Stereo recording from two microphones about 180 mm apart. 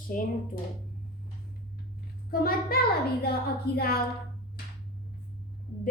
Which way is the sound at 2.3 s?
55° left (ahead or behind).